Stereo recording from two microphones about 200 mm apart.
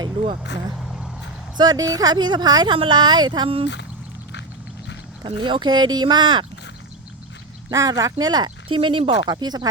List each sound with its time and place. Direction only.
0.8 s vehicle: centre (ahead or behind)
1.5 s speech: 20° right (ahead or behind)
5.2 s speech: 25° right (ahead or behind)
7.7 s speech: 15° right (ahead or behind)